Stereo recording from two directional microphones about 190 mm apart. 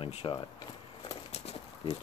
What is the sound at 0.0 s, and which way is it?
Speech, 30° left (ahead or behind).